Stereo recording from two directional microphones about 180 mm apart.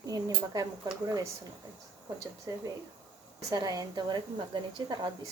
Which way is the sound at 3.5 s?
20° right (ahead or behind).